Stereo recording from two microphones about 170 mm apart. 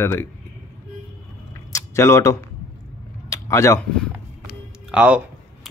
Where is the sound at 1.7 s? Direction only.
15° left (ahead or behind).